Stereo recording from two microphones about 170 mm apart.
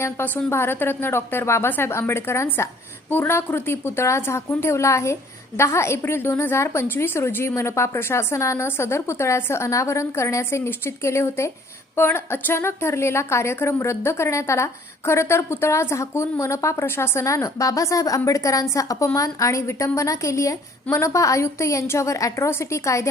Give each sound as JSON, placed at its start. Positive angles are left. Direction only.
{"t": 0.0, "sound": "a woman's voice", "side_deg": 15}